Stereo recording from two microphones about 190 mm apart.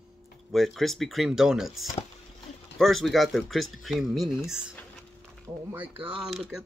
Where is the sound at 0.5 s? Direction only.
Centre (ahead or behind).